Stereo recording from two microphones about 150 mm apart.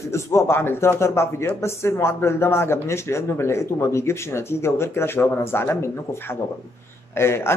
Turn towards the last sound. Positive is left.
turn(degrees=15)  # may be behind; listen again after turning